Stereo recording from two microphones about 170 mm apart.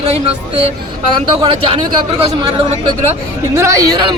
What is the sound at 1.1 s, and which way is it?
A man's voice, 30° right (ahead or behind).